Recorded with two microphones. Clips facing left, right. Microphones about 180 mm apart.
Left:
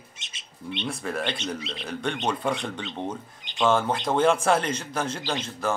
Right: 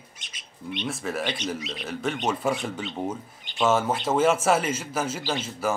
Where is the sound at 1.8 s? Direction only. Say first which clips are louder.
Right 1 dB; 5° right (ahead or behind).